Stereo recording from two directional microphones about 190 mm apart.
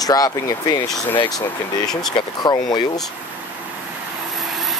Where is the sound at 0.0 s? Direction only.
20° left (ahead or behind).